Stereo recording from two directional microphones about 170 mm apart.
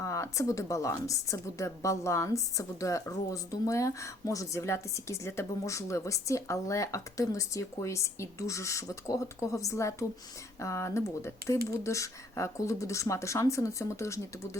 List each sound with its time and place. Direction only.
0.0 s a woman's voice: 20° left (ahead or behind)